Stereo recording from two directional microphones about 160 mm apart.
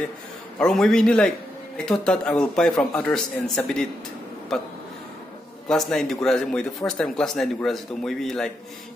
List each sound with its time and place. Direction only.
0.6 s speech: 5° left (ahead or behind)
5.7 s speech: centre (ahead or behind)